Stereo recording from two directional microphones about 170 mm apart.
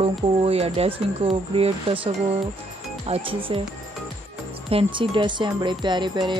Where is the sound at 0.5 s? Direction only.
35° right (ahead or behind).